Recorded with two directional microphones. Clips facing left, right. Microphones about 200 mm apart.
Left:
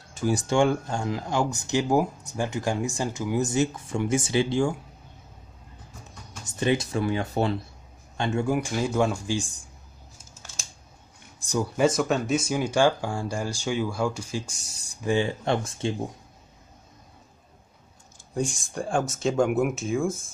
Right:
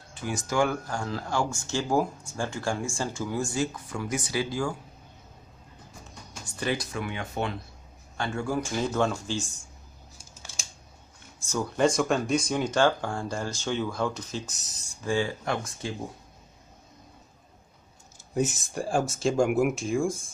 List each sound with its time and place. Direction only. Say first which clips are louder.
0.1 s speech: left 6 dB; 40° left (ahead or behind)
6.6 s speech: left 6 dB; 25° left (ahead or behind)
8.2 s speech: left 4 dB; 20° left (ahead or behind)
11.4 s speech: left 2 dB; 10° left (ahead or behind)
15.0 s speech: left 3 dB; 20° left (ahead or behind)
18.3 s speech: right 1 dB; 5° right (ahead or behind)